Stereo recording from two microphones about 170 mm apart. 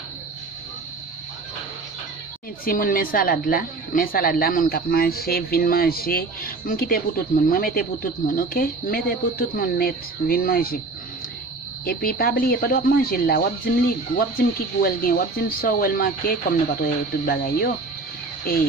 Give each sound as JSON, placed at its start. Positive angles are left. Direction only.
{"t": 2.6, "sound": "a woman's voice", "side_deg": 55}
{"t": 11.8, "sound": "a woman's voice", "side_deg": 60}